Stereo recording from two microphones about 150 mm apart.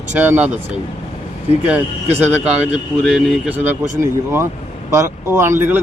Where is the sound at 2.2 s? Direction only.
10° right (ahead or behind).